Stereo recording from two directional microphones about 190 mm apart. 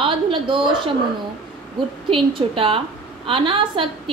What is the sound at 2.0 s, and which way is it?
A woman's voice, 25° right (ahead or behind).